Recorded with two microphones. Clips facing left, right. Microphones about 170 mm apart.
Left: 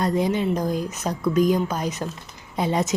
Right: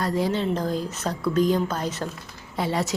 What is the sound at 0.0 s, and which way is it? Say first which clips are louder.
Speech: left 2 dB; 20° left (ahead or behind).